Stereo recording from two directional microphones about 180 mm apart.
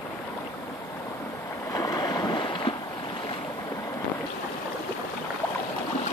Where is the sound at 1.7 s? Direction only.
20° left (ahead or behind).